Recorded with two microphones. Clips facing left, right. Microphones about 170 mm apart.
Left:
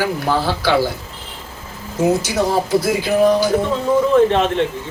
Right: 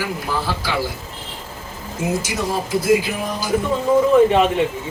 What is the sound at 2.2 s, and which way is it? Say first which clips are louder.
Speech: left 5 dB; 70° left (ahead or behind).